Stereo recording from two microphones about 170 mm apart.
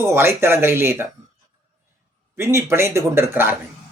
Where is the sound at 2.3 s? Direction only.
15° right (ahead or behind).